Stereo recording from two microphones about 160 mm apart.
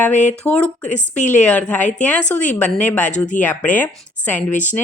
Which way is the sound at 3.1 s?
50° left (ahead or behind).